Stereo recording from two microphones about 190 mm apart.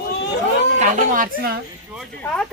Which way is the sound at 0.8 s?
45° right (ahead or behind).